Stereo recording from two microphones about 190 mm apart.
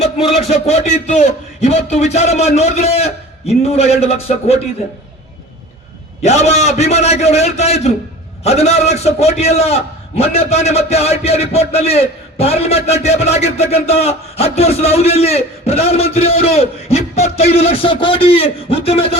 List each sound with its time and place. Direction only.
0.4 s a man's voice: 35° left (ahead or behind)
6.2 s a man's voice: 35° left (ahead or behind)